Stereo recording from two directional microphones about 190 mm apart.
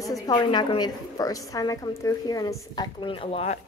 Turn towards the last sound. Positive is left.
turn(degrees=30)  # may be behind; listen again after turning